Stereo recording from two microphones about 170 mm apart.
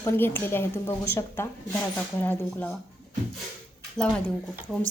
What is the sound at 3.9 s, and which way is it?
Speech, 5° left (ahead or behind).